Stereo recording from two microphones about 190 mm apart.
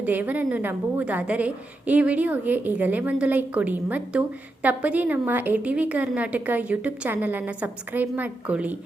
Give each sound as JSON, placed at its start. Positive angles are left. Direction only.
{"t": 0.0, "sound": "a woman's voice", "side_deg": -10}